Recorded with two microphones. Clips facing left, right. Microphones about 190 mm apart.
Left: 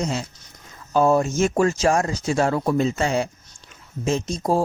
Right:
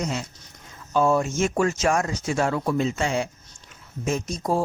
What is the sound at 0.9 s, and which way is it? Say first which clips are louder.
Speech: left 3 dB; 40° left (ahead or behind).